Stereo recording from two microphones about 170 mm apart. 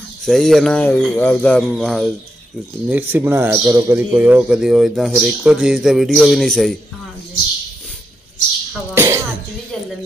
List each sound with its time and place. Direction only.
0.2 s a man's voice: centre (ahead or behind)
2.9 s a man's voice: 10° right (ahead or behind)
8.9 s cough: 15° right (ahead or behind)